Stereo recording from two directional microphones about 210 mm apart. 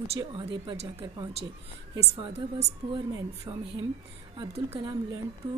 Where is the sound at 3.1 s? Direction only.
15° right (ahead or behind).